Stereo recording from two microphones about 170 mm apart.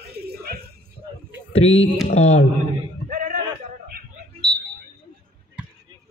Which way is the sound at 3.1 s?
50° right (ahead or behind).